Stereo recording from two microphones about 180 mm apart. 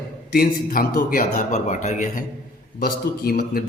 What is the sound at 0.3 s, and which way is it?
Speech, 55° left (ahead or behind).